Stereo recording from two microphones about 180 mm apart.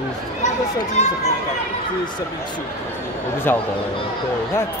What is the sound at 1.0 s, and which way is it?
Speech, 35° left (ahead or behind).